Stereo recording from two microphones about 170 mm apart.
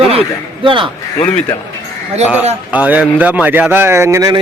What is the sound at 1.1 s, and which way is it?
Speech, 25° left (ahead or behind).